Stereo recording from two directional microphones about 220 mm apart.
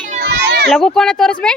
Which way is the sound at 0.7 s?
Centre (ahead or behind).